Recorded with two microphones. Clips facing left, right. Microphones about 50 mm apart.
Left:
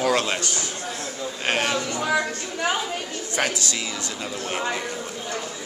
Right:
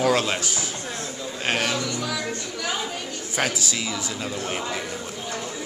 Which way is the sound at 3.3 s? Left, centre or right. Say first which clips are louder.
Even; centre.